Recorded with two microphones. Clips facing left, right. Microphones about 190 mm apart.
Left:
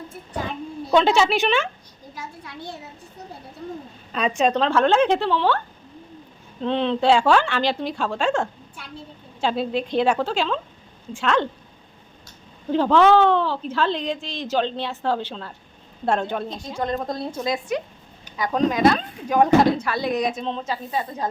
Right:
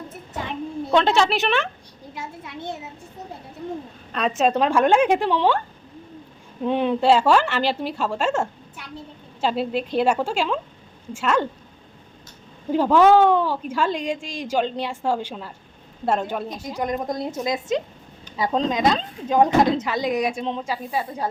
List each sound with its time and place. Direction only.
0.9 s a woman's voice: centre (ahead or behind)
2.1 s a sound: 25° right (ahead or behind)
4.1 s speech: centre (ahead or behind)
6.6 s speech: 10° right (ahead or behind)
12.7 s a woman's voice: 10° right (ahead or behind)